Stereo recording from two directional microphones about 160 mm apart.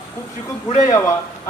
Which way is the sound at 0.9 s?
20° left (ahead or behind).